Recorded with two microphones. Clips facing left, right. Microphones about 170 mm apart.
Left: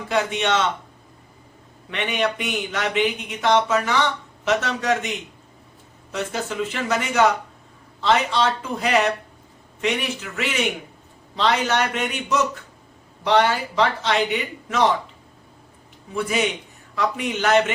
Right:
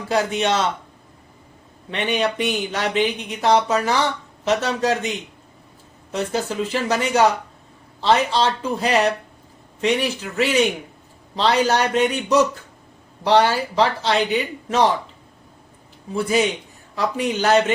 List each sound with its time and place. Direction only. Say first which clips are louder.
0.1 s speech: right 2 dB; 35° right (ahead or behind)
1.9 s speech: right 2 dB; 30° right (ahead or behind)
16.1 s speech: right 3 dB; 35° right (ahead or behind)